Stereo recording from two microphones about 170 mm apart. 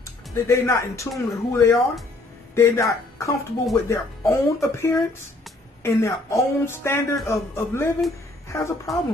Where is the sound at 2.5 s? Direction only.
15° left (ahead or behind).